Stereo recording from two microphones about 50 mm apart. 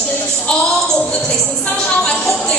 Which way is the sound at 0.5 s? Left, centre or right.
Centre.